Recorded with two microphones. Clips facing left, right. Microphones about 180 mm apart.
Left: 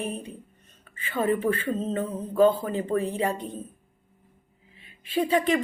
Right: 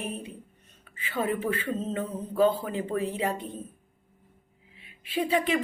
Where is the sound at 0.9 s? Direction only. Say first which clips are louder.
Left 2 dB; 10° right (ahead or behind).